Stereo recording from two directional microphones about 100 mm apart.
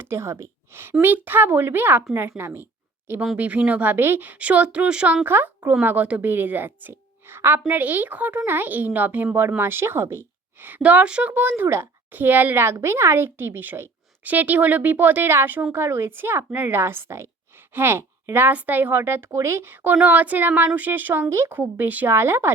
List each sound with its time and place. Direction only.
0.0 s a woman's voice: 25° right (ahead or behind)